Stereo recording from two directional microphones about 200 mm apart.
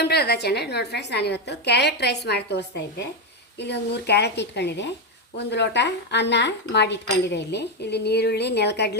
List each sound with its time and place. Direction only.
0.0 s speech: 55° left (ahead or behind)